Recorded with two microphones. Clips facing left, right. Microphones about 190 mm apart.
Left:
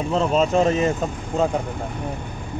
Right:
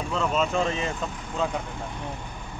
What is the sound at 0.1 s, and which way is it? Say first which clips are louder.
Speech: left 6 dB; 35° left (ahead or behind).